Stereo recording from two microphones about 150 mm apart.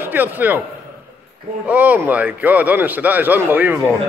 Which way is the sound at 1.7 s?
10° right (ahead or behind).